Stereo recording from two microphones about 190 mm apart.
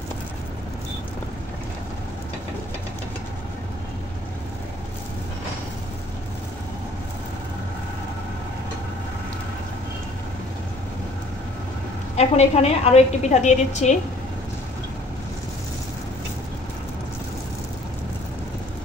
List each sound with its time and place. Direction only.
12.2 s a woman's voice: 35° left (ahead or behind)